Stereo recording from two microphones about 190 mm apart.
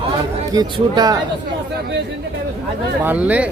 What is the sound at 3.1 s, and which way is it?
Speech, 10° right (ahead or behind).